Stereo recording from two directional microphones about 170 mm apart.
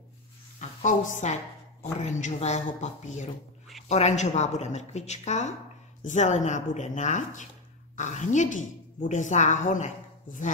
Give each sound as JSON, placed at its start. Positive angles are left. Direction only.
{"t": 0.6, "sound": "a woman's voice", "side_deg": 45}